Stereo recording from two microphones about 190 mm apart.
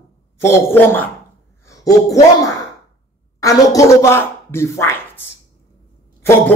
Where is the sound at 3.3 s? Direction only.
15° left (ahead or behind).